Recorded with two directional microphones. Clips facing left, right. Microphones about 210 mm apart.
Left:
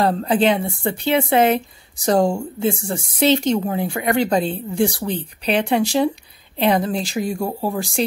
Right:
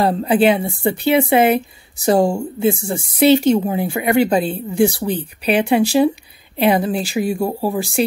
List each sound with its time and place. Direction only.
0.0 s speech: 10° right (ahead or behind)